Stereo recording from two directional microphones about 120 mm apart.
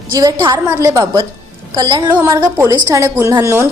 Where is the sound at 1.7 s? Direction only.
35° right (ahead or behind).